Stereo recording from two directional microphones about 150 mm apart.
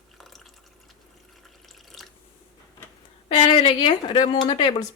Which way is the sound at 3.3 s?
40° left (ahead or behind).